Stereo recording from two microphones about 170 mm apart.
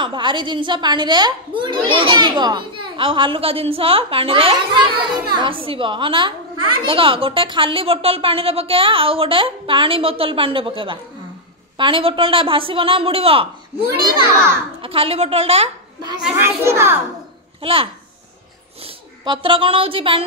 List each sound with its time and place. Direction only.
0.0 s a woman's voice: 25° right (ahead or behind)
16.3 s a child's voice: 15° right (ahead or behind)
17.6 s a child's voice: 30° right (ahead or behind)
19.2 s a woman's voice: 30° right (ahead or behind)